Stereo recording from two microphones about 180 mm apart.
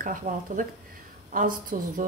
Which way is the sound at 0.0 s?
45° right (ahead or behind).